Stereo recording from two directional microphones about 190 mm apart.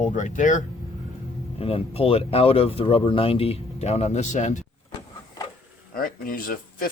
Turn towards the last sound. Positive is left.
turn(degrees=50)  # may be behind; listen again after turning